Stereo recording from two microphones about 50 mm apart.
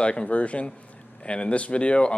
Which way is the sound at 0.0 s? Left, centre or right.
Left.